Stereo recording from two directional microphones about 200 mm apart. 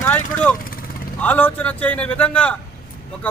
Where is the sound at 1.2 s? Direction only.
10° left (ahead or behind).